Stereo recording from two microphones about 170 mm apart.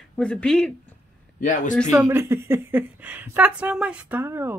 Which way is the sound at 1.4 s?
50° left (ahead or behind).